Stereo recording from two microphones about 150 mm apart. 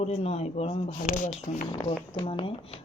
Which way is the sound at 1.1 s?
60° left (ahead or behind).